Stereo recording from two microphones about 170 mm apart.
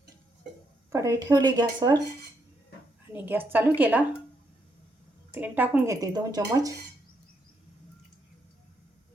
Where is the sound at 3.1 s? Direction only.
10° right (ahead or behind).